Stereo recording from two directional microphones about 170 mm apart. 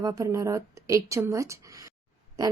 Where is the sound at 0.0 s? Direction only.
20° right (ahead or behind).